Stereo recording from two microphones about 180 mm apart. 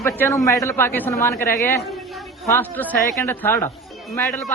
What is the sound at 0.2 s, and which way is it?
Speech, 15° left (ahead or behind).